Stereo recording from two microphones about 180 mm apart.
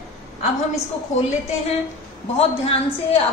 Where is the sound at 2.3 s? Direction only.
35° left (ahead or behind).